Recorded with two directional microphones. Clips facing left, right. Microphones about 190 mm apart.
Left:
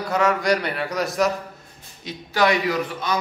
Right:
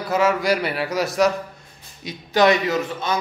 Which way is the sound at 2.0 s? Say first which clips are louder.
Right 4 dB; 15° right (ahead or behind).